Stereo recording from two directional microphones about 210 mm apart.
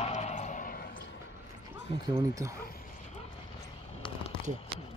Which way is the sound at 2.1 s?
15° right (ahead or behind).